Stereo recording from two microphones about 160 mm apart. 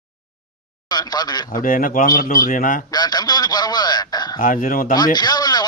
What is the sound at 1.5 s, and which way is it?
A man's voice, 60° left (ahead or behind).